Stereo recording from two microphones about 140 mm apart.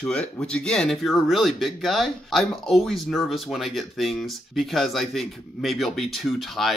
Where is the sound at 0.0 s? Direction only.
5° left (ahead or behind).